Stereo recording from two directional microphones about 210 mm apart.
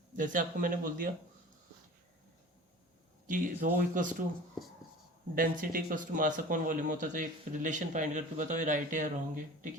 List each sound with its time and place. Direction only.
0.2 s speech: 40° right (ahead or behind)
3.2 s speech: 40° right (ahead or behind)
5.3 s speech: 40° right (ahead or behind)